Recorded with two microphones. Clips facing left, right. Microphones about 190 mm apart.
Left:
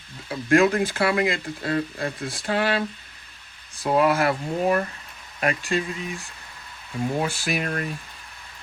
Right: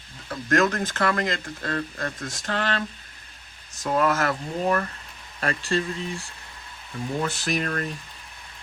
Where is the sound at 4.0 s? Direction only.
10° left (ahead or behind).